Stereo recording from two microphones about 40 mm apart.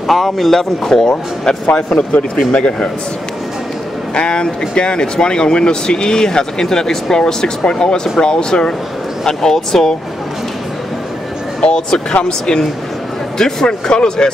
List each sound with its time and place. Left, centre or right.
0.0 s speech: centre
2.3 s speech: left
4.1 s speech: left
11.6 s speech: centre